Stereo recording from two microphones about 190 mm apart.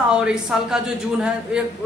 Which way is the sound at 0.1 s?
5° right (ahead or behind).